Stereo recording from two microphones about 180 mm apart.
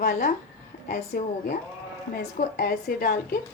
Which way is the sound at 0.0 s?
55° left (ahead or behind).